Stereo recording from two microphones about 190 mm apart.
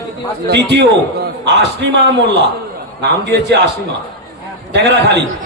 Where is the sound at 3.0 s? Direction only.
60° right (ahead or behind).